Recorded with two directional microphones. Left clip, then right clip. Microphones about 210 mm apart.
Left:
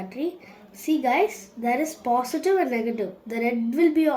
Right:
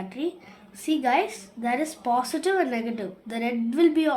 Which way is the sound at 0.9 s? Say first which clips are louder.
Left 1 dB; 25° right (ahead or behind).